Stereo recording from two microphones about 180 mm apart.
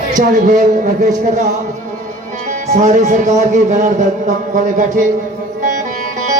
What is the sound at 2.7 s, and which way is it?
Speech, 45° right (ahead or behind).